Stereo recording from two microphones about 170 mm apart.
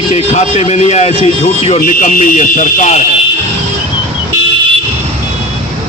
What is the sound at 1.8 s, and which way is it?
A man's voice, 45° left (ahead or behind).